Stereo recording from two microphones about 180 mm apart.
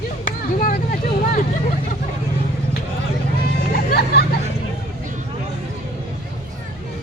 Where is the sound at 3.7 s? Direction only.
60° left (ahead or behind).